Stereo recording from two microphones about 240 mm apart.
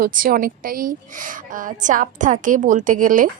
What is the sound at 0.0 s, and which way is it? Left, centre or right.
A woman's voice, right.